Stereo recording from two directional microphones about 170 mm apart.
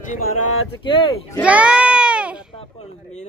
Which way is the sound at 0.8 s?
30° left (ahead or behind).